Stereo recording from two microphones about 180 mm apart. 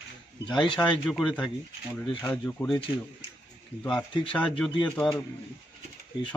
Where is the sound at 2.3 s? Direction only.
10° left (ahead or behind).